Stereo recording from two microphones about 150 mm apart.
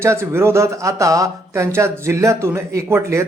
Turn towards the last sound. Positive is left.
turn(degrees=-15)  # may be behind; listen again after turning